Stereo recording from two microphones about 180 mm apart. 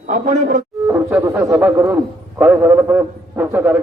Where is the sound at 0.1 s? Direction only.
45° right (ahead or behind).